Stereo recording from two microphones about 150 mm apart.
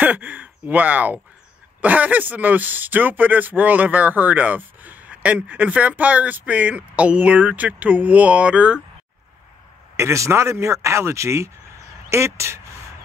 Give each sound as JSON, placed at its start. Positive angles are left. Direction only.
{"t": 0.0, "sound": "speech", "side_deg": -10}
{"t": 9.9, "sound": "speech", "side_deg": -20}